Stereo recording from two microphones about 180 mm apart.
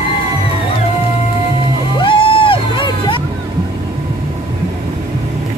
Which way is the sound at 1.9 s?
30° left (ahead or behind).